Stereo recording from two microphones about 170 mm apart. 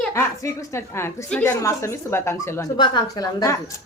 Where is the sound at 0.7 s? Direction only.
15° left (ahead or behind).